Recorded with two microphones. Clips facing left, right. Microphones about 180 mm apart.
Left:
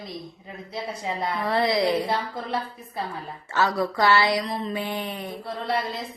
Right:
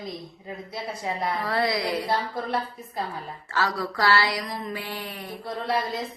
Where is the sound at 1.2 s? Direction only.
20° left (ahead or behind).